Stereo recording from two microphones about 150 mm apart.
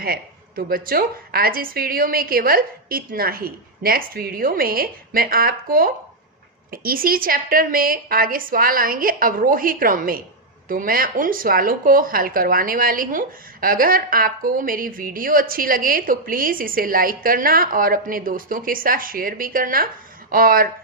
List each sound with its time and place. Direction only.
0.0 s speech: 80° right